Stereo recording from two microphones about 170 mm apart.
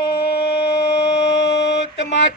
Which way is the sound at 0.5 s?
35° left (ahead or behind).